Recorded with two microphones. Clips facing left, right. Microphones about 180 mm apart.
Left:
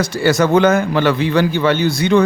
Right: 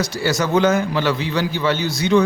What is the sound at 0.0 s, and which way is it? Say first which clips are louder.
A man's voice: left 6 dB; 55° left (ahead or behind).